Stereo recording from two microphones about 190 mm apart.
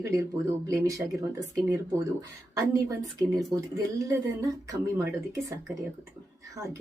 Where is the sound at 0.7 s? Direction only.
15° right (ahead or behind).